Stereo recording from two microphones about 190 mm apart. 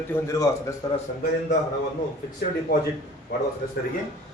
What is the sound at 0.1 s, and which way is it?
Speech, 15° left (ahead or behind).